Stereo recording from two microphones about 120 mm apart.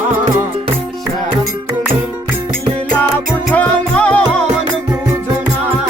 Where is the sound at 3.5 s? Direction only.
10° left (ahead or behind).